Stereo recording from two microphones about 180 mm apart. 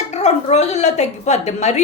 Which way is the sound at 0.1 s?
40° left (ahead or behind).